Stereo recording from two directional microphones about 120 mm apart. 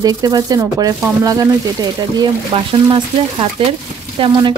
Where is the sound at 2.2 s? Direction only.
40° right (ahead or behind).